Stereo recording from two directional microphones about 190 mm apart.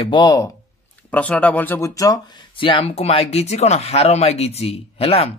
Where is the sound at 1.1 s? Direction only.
10° left (ahead or behind).